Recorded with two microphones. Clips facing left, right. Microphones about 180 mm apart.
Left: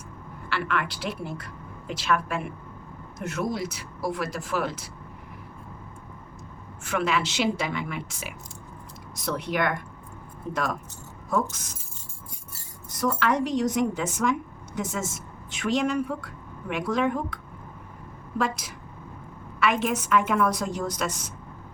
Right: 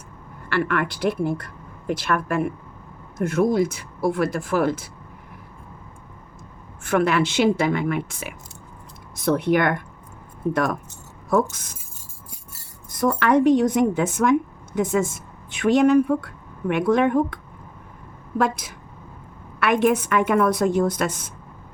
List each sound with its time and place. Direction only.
0.4 s speech: 50° right (ahead or behind)
6.8 s a woman's voice: 55° right (ahead or behind)
13.0 s a woman's voice: 55° right (ahead or behind)